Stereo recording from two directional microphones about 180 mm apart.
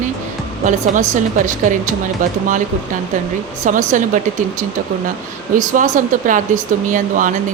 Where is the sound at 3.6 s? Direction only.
45° right (ahead or behind).